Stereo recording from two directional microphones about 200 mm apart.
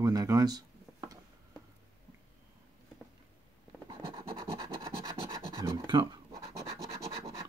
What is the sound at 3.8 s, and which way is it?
Scratch, 25° right (ahead or behind).